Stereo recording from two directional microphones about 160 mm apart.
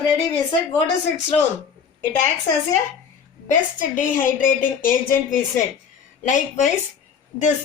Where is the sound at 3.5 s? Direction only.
55° left (ahead or behind).